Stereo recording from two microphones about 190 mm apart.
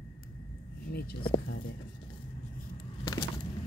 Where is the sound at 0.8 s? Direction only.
55° left (ahead or behind).